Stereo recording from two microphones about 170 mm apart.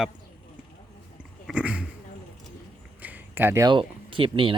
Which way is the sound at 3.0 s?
10° right (ahead or behind).